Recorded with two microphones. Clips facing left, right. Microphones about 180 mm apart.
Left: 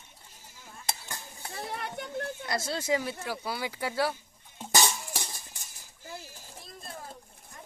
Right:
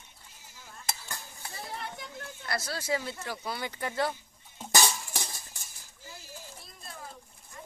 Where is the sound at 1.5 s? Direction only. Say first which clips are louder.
Left 4 dB; 55° left (ahead or behind).